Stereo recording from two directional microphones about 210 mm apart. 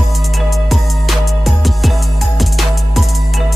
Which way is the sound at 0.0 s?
Centre (ahead or behind).